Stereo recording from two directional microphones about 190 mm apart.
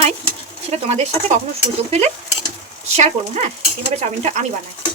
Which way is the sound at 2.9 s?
35° right (ahead or behind).